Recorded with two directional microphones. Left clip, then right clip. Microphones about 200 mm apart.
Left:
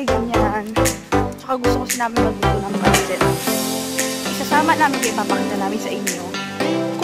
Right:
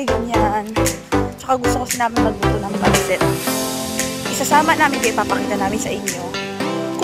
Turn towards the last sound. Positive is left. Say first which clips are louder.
# even
turn(degrees=0)  # may be behind; listen again after turning